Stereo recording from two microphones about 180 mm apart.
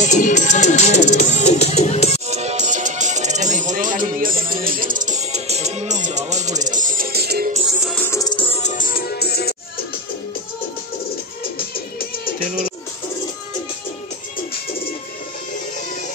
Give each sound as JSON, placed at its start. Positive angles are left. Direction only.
{"t": 0.0, "sound": "music", "side_deg": 40}
{"t": 2.2, "sound": "music", "side_deg": -35}
{"t": 7.8, "sound": "music", "side_deg": 5}
{"t": 8.4, "sound": "music", "side_deg": 35}
{"t": 11.7, "sound": "music", "side_deg": 55}